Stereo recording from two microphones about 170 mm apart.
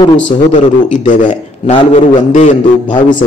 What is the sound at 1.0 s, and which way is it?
A man's voice, 50° left (ahead or behind).